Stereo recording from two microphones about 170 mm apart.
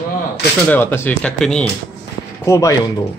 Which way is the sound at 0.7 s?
10° left (ahead or behind).